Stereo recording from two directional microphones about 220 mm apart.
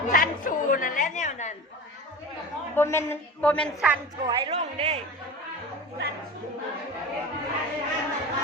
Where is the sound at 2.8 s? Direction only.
10° left (ahead or behind).